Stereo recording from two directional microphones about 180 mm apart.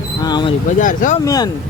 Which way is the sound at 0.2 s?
25° left (ahead or behind).